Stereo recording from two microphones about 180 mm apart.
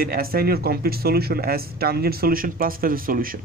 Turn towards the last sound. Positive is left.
turn(degrees=-50)  # may be behind; listen again after turning